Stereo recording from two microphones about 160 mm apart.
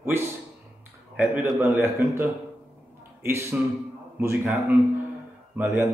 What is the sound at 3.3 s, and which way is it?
A man's voice, 15° right (ahead or behind).